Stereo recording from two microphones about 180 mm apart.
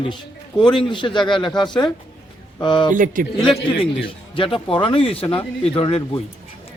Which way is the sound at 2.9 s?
50° right (ahead or behind).